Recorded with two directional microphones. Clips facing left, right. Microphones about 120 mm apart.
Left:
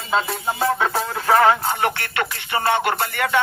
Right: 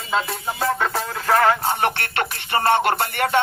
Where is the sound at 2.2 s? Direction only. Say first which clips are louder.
Right 1 dB; 40° right (ahead or behind).